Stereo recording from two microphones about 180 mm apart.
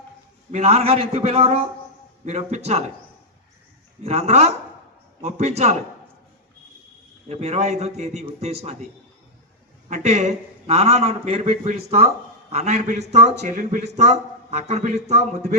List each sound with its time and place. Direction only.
0.5 s a man's voice: 35° right (ahead or behind)
4.0 s a man's voice: 35° right (ahead or behind)
7.3 s a man's voice: 35° right (ahead or behind)
9.9 s a man's voice: 40° right (ahead or behind)